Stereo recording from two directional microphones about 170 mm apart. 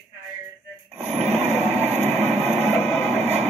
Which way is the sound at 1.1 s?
40° right (ahead or behind).